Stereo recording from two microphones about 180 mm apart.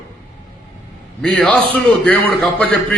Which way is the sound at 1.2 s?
5° left (ahead or behind).